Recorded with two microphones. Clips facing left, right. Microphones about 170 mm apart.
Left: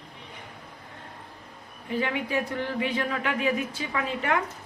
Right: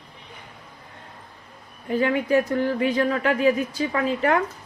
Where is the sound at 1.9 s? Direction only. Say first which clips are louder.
Right 7 dB; 45° right (ahead or behind).